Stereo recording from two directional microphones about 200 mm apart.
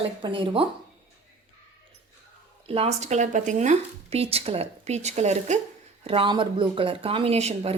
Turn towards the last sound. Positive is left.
turn(degrees=-30)  # may be behind; listen again after turning